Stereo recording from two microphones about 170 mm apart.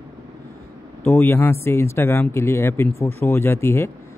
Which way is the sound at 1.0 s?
10° left (ahead or behind).